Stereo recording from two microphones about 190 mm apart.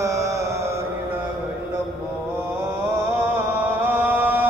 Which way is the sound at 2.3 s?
15° right (ahead or behind).